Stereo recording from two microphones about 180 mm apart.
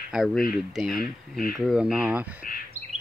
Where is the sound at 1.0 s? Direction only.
50° left (ahead or behind).